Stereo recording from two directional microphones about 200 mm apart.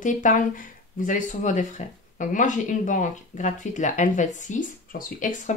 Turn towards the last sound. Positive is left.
turn(degrees=40)  # may be behind; listen again after turning